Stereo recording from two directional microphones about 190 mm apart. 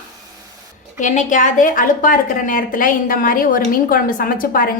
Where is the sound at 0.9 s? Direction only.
40° left (ahead or behind).